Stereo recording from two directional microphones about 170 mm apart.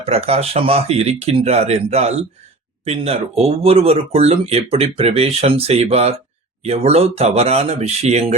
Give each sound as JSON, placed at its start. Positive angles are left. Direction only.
{"t": 0.0, "sound": "speech", "side_deg": -35}